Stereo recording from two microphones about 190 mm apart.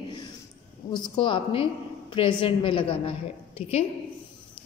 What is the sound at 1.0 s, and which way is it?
A woman's voice, 25° left (ahead or behind).